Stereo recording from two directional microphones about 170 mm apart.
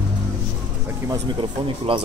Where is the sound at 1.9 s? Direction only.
30° right (ahead or behind).